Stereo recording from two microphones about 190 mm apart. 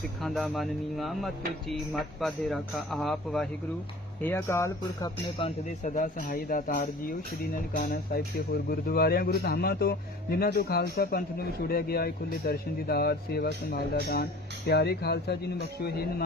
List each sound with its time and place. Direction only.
0.2 s speech: centre (ahead or behind); by 5.5 s 20° left (ahead or behind)
5.8 s a man's voice: 45° left (ahead or behind)